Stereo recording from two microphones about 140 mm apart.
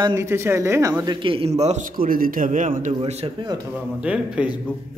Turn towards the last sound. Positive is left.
turn(degrees=-10)  # may be behind; listen again after turning